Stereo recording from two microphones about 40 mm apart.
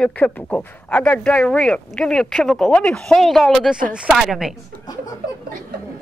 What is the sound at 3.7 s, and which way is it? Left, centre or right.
Speech, right.